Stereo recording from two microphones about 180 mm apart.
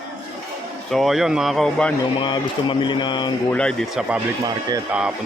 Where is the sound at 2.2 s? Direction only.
25° left (ahead or behind).